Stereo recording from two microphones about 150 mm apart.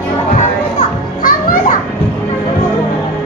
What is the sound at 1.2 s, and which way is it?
Children playing, 65° left (ahead or behind).